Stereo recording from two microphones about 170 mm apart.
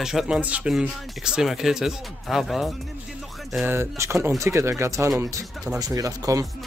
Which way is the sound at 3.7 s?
15° right (ahead or behind).